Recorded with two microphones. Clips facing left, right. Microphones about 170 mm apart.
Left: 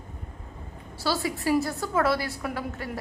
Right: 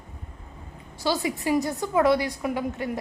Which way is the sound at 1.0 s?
20° right (ahead or behind).